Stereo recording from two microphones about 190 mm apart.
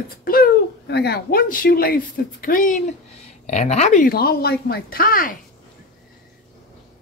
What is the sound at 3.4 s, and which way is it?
Speech, 35° left (ahead or behind).